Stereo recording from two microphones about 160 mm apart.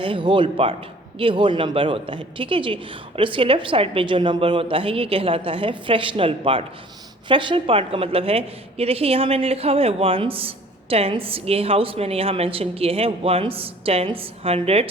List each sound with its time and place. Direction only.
0.0 s a woman's voice: 35° right (ahead or behind)